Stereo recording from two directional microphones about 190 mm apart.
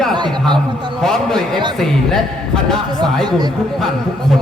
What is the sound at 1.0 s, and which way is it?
A man's voice, 5° left (ahead or behind).